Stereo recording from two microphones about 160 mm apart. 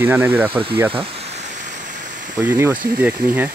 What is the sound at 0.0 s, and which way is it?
Speech, 10° right (ahead or behind).